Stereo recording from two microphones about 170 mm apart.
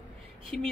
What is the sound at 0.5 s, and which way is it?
Speech, 5° left (ahead or behind).